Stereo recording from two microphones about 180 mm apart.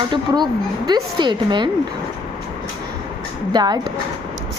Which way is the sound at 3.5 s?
25° right (ahead or behind).